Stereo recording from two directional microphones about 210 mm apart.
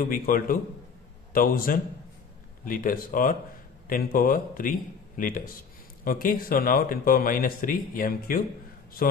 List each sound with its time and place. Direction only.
0.0 s a man's voice: 40° left (ahead or behind)